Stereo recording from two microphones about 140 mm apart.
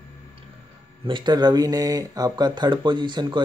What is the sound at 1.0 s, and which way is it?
Speech, 35° right (ahead or behind).